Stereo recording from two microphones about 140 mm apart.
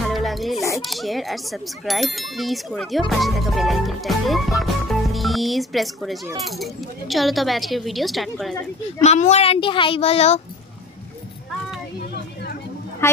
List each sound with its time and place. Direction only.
0.0 s music: centre (ahead or behind)
0.8 s speech: centre (ahead or behind)
9.0 s speech: 55° left (ahead or behind)
13.0 s speech: 20° left (ahead or behind)